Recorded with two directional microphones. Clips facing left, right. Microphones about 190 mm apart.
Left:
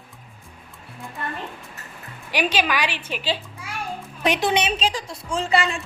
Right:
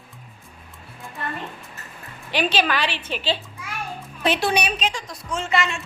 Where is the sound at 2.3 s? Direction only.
10° left (ahead or behind).